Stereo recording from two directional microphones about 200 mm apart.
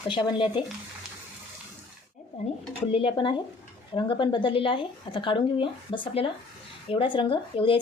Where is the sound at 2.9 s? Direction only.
25° left (ahead or behind).